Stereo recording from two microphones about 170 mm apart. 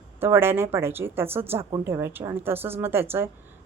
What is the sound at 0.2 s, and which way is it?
Speech, 15° right (ahead or behind).